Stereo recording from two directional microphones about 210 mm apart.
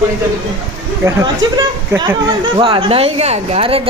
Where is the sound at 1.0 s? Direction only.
20° right (ahead or behind).